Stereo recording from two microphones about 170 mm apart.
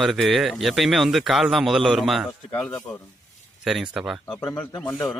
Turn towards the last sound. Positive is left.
turn(degrees=10)  # may be behind; listen again after turning